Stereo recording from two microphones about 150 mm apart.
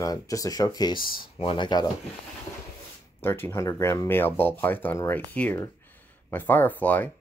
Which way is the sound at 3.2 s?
15° left (ahead or behind).